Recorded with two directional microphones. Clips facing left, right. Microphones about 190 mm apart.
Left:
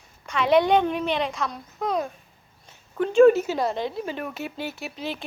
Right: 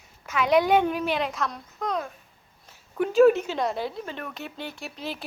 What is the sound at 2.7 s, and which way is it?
A woman's voice, 5° right (ahead or behind).